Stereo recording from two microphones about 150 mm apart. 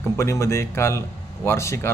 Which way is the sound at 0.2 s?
20° left (ahead or behind).